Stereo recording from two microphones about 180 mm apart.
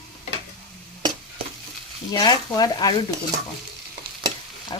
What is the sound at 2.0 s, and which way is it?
Speech, 20° left (ahead or behind).